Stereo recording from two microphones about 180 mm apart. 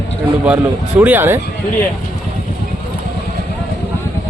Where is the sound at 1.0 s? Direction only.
10° right (ahead or behind).